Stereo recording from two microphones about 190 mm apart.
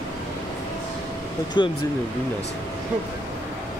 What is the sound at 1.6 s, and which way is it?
Speech, 25° left (ahead or behind).